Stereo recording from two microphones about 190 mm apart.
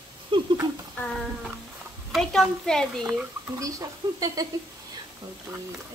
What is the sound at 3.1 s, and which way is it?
Speech, 15° right (ahead or behind).